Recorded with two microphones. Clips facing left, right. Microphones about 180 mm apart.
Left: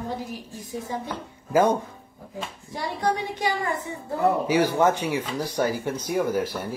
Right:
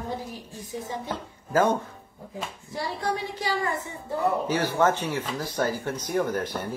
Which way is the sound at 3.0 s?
20° left (ahead or behind).